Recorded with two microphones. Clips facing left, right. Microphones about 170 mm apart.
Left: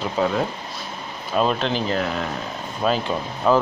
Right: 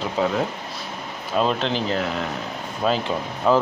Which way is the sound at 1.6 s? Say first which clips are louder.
Left 1 dB; 20° right (ahead or behind).